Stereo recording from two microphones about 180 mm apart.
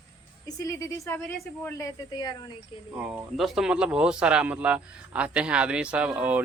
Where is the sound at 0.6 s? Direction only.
20° left (ahead or behind).